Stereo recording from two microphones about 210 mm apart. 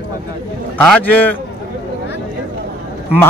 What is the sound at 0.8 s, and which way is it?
Speech, 10° left (ahead or behind).